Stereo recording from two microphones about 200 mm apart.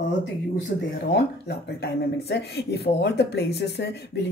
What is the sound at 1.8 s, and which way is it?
Speech, 55° left (ahead or behind).